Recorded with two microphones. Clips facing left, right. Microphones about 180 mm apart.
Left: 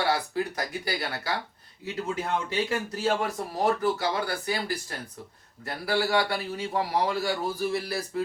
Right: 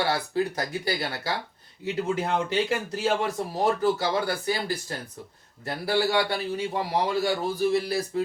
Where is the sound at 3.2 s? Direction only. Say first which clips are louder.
Right 1 dB; 25° right (ahead or behind).